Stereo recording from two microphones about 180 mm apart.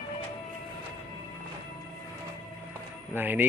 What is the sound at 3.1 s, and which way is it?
Speech, 10° right (ahead or behind).